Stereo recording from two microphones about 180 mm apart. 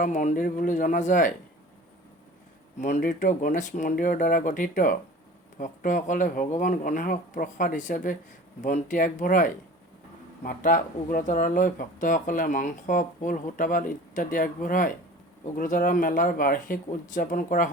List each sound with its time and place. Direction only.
0.0 s speech: 45° left (ahead or behind)
2.7 s speech: 45° left (ahead or behind)